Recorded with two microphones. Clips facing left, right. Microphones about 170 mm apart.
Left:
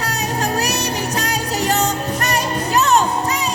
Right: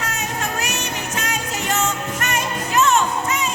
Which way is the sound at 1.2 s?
35° left (ahead or behind).